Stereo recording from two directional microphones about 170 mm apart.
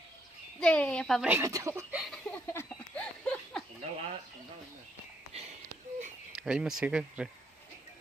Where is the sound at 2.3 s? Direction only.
15° left (ahead or behind).